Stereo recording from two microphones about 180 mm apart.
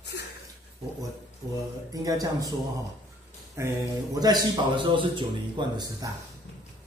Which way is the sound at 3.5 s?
15° right (ahead or behind).